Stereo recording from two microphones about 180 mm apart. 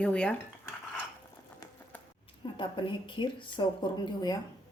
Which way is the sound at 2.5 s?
25° left (ahead or behind).